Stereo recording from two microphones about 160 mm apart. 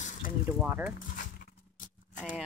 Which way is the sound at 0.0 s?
50° left (ahead or behind).